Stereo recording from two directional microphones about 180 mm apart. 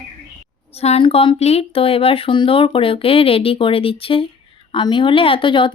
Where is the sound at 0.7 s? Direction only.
35° left (ahead or behind).